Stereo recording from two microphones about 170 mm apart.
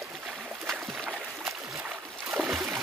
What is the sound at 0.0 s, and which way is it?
Boat, centre (ahead or behind).